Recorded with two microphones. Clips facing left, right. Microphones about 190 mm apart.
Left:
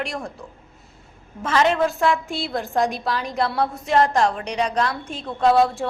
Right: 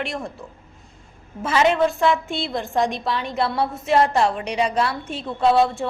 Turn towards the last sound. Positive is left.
turn(degrees=0)  # may be behind; listen again after turning